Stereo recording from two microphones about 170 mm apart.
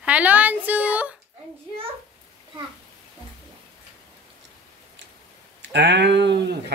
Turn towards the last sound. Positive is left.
turn(degrees=-80)